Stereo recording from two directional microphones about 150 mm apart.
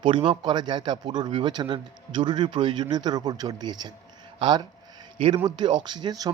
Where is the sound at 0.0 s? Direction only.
35° right (ahead or behind).